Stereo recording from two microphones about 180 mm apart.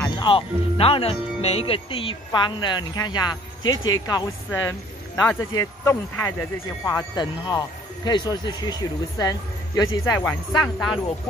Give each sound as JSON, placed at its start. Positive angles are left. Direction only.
{"t": 0.1, "sound": "speech", "side_deg": 25}
{"t": 3.6, "sound": "speech", "side_deg": 90}
{"t": 4.1, "sound": "speech", "side_deg": 20}